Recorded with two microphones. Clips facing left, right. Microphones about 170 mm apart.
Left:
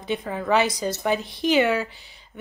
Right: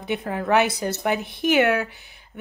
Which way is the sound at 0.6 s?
60° right (ahead or behind).